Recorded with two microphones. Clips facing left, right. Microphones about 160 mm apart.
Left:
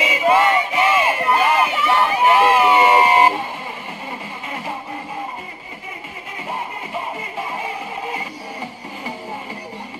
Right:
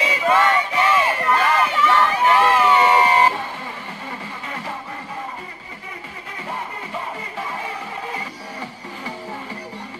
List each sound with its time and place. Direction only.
0.0 s crowd: 10° left (ahead or behind)